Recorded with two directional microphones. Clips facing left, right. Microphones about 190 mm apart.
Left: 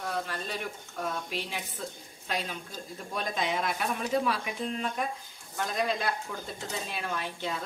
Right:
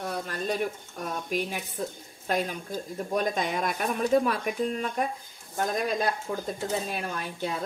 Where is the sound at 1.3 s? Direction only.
45° right (ahead or behind).